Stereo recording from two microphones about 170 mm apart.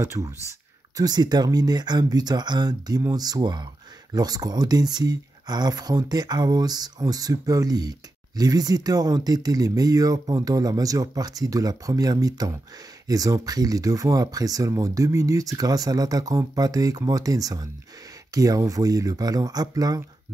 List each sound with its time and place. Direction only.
0.0 s speech: 15° right (ahead or behind)